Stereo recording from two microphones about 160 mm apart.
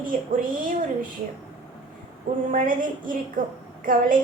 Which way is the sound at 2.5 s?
60° right (ahead or behind).